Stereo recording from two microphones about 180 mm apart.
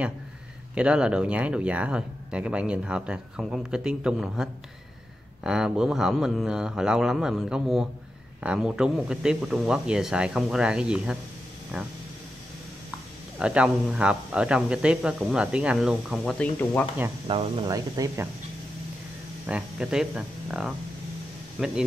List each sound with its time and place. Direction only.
0.7 s speech: 5° right (ahead or behind)
13.4 s speech: 5° right (ahead or behind)
17.3 s speech: 30° right (ahead or behind)
19.4 s speech: 5° right (ahead or behind)